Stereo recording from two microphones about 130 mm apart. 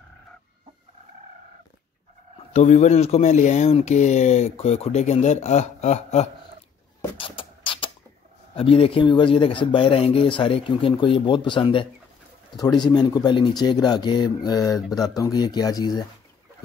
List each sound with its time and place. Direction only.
2.3 s speech: 60° left (ahead or behind)
7.2 s beatboxing: 40° left (ahead or behind)
8.5 s speech: 45° left (ahead or behind)